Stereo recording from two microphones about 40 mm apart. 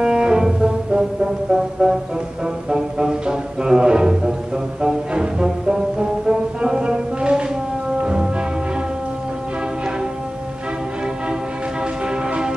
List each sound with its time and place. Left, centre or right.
0.0 s music: centre